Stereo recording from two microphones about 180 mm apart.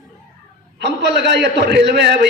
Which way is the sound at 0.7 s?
70° right (ahead or behind).